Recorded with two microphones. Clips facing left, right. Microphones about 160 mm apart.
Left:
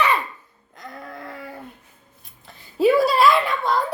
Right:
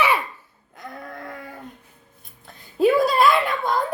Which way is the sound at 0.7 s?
Centre (ahead or behind).